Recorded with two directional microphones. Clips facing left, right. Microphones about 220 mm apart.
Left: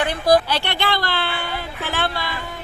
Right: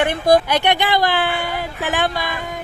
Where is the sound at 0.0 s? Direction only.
20° right (ahead or behind).